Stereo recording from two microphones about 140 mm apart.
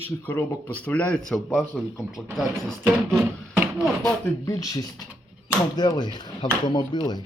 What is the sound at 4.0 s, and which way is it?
Speech, 25° left (ahead or behind).